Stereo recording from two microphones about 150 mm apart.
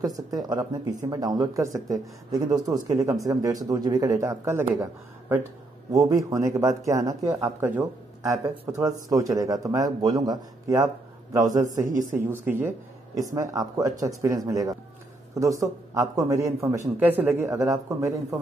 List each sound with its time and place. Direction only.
0.0 s a man's voice: 25° right (ahead or behind)
5.9 s a man's voice: 25° right (ahead or behind)
11.8 s speech: 55° right (ahead or behind)
12.3 s a man's voice: 15° right (ahead or behind)